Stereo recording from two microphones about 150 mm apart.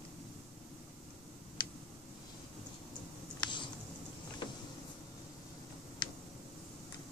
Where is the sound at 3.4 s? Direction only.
30° left (ahead or behind).